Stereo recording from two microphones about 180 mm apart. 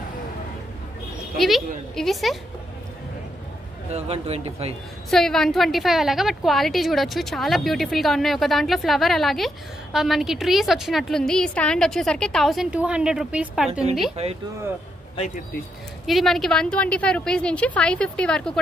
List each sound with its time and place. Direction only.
2.0 s a woman's voice: centre (ahead or behind)
3.9 s speech: 35° right (ahead or behind)
5.1 s a woman's voice: centre (ahead or behind)
15.1 s speech: 40° left (ahead or behind)
16.1 s a woman's voice: centre (ahead or behind)